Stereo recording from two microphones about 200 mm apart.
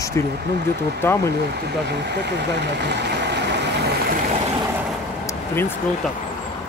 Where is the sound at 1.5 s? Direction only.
55° right (ahead or behind).